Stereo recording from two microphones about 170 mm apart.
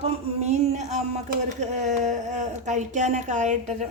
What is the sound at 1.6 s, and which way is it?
Speech, 45° right (ahead or behind).